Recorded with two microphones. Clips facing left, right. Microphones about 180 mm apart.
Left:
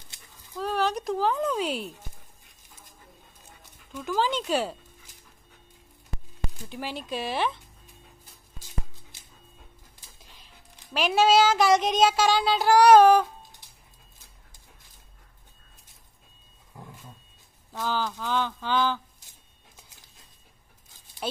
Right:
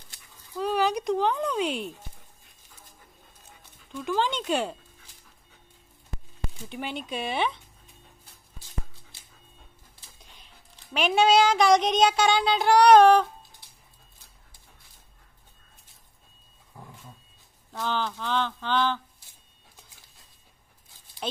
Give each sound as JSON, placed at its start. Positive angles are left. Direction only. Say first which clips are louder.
{"t": 0.6, "sound": "speech", "louder": "right 2 dB", "side_deg": 0}
{"t": 3.9, "sound": "speech", "louder": "even", "side_deg": 5}
{"t": 6.7, "sound": "speech", "louder": "even", "side_deg": 0}
{"t": 10.2, "sound": "speech", "louder": "left 1 dB", "side_deg": 0}
{"t": 17.7, "sound": "speech", "louder": "even", "side_deg": 5}
{"t": 20.9, "sound": "a sound", "louder": "left 1 dB", "side_deg": 15}